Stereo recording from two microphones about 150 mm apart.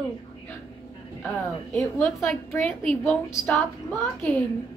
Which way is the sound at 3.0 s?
15° left (ahead or behind).